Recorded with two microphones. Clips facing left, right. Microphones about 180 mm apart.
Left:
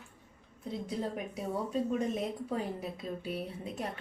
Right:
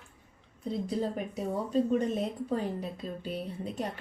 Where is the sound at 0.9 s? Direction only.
30° right (ahead or behind).